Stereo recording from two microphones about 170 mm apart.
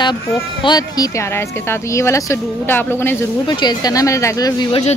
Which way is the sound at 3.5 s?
25° left (ahead or behind).